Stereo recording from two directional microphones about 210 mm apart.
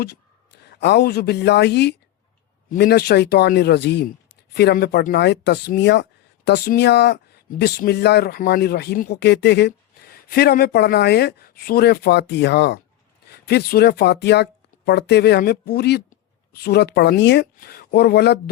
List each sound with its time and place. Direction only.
0.7 s speech: 50° left (ahead or behind)